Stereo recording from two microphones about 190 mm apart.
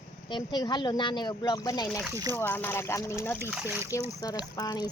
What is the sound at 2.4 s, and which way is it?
Speech, 10° left (ahead or behind).